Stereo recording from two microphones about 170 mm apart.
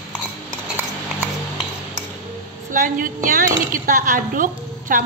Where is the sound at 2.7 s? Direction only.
50° right (ahead or behind).